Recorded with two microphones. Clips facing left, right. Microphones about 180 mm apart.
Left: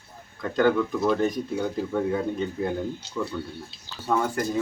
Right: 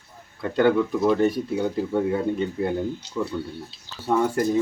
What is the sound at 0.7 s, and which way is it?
Speech, 10° right (ahead or behind).